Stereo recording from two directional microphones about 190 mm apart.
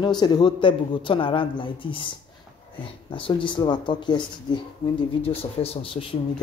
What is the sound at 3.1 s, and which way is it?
Speech, 25° left (ahead or behind).